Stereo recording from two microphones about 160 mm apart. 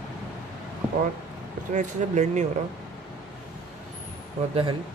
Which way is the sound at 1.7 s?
50° right (ahead or behind).